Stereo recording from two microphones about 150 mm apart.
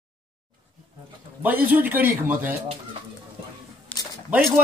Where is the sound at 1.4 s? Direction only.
10° right (ahead or behind).